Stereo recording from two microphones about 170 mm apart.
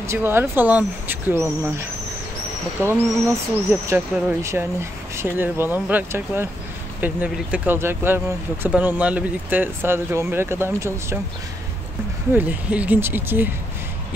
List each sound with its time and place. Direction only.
0.0 s speech: 15° right (ahead or behind)
12.4 s speech: 10° right (ahead or behind)